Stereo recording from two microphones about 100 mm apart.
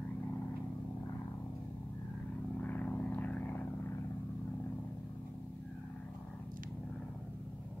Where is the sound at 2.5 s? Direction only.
15° left (ahead or behind).